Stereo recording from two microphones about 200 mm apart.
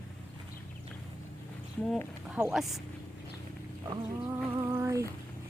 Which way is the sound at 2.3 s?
5° right (ahead or behind).